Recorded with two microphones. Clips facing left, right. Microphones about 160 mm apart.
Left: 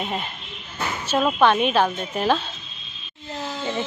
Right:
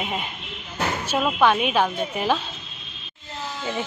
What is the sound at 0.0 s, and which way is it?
A woman's voice, 10° right (ahead or behind).